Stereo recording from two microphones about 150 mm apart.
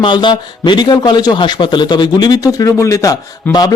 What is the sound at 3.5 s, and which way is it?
Speech, 10° left (ahead or behind).